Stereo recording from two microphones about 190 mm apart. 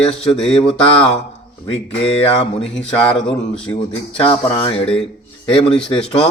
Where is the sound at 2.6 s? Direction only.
5° left (ahead or behind).